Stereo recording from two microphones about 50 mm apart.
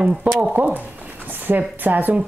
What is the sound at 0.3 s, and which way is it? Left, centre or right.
Speech, right.